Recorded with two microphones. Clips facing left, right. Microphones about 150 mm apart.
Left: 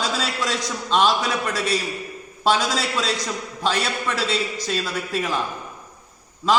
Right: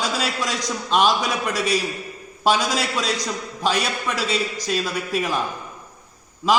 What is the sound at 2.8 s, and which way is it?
A man's voice, 15° right (ahead or behind).